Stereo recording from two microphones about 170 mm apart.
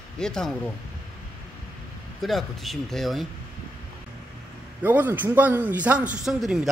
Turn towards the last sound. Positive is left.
turn(degrees=0)  # may be behind; listen again after turning